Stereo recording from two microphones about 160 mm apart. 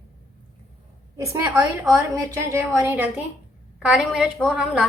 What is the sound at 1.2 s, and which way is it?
A woman's voice, 20° right (ahead or behind).